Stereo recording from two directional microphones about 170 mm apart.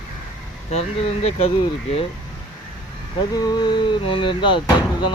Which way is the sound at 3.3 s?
25° left (ahead or behind).